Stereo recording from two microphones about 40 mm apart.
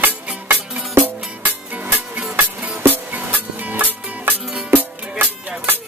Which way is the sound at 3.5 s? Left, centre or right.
Right.